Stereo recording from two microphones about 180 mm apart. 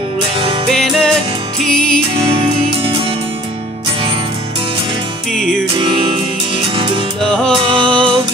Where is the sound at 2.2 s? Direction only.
30° right (ahead or behind).